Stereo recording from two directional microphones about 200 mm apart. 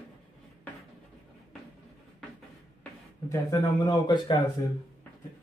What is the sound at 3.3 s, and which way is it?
Speech, 15° left (ahead or behind).